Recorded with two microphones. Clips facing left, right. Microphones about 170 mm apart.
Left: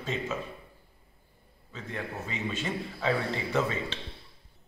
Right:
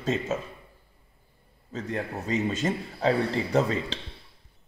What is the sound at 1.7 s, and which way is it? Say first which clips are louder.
A man's voice: right 6 dB; 40° right (ahead or behind).